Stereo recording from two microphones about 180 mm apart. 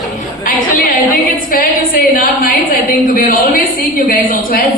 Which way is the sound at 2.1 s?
50° left (ahead or behind).